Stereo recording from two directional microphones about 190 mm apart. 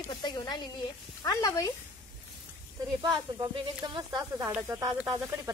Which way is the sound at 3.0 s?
20° right (ahead or behind).